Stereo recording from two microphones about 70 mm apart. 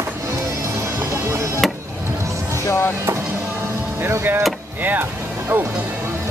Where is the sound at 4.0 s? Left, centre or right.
Right.